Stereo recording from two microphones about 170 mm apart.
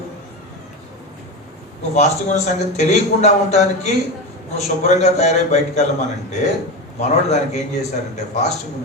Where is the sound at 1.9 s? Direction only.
40° left (ahead or behind).